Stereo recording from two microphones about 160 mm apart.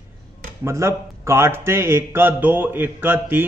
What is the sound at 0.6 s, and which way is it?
Speech, 20° right (ahead or behind).